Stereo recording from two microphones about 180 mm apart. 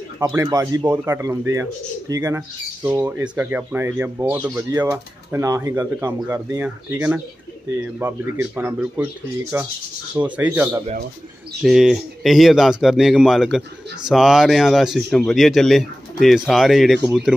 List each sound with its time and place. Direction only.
0.2 s speech: 20° right (ahead or behind)